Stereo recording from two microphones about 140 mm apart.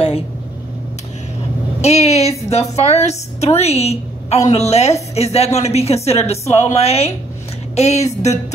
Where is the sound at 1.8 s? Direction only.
50° left (ahead or behind).